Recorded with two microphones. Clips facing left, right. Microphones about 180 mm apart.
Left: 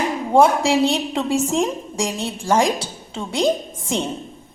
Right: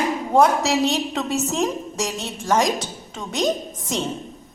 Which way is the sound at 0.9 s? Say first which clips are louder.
Left 2 dB; 10° left (ahead or behind).